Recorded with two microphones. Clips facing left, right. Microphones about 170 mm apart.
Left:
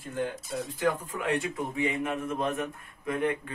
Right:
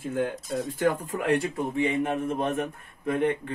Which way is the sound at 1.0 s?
40° right (ahead or behind).